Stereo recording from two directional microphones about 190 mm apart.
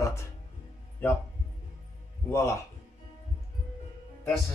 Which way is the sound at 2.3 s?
15° left (ahead or behind).